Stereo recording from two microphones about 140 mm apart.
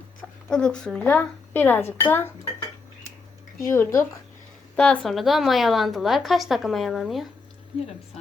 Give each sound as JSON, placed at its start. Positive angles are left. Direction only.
{"t": 0.4, "sound": "speech", "side_deg": 5}
{"t": 3.6, "sound": "speech", "side_deg": 20}
{"t": 4.8, "sound": "a woman's voice", "side_deg": 5}